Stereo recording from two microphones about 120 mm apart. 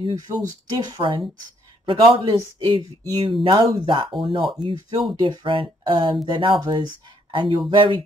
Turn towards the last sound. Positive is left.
turn(degrees=-45)  # may be behind; listen again after turning